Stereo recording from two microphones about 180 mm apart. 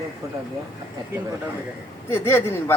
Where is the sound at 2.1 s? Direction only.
15° left (ahead or behind).